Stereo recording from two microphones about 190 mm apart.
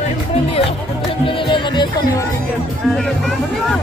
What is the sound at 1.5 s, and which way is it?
Music, 25° left (ahead or behind).